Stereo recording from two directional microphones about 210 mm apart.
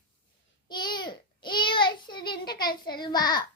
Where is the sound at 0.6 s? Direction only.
20° left (ahead or behind).